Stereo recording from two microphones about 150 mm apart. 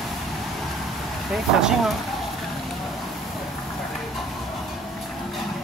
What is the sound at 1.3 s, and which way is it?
Speech, 5° right (ahead or behind).